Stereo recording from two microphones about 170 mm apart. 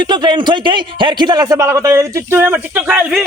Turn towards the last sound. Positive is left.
turn(degrees=-5)  # may be behind; listen again after turning